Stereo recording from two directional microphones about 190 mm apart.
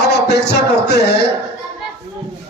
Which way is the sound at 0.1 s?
60° left (ahead or behind).